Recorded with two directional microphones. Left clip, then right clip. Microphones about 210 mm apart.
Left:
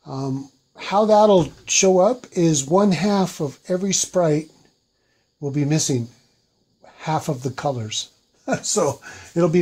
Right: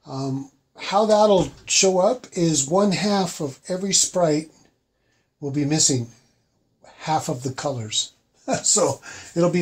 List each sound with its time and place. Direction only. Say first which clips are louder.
0.0 s speech: left 1 dB; 40° left (ahead or behind)